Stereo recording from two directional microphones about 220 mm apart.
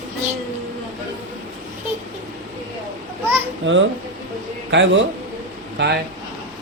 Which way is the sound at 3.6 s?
55° right (ahead or behind).